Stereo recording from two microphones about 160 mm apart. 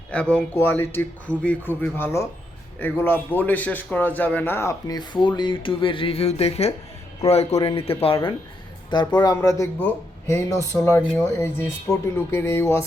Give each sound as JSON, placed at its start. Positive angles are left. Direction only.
{"t": 0.1, "sound": "a man's voice", "side_deg": 5}